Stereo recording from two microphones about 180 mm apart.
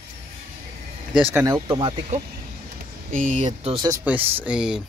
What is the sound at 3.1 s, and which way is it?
Speech, 45° right (ahead or behind).